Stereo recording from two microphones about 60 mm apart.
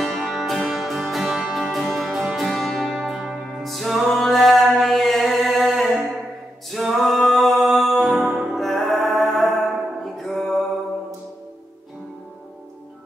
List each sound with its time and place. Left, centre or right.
0.0 s music: centre
8.5 s music: centre